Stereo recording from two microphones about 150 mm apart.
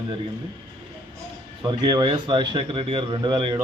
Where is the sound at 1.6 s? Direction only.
30° right (ahead or behind).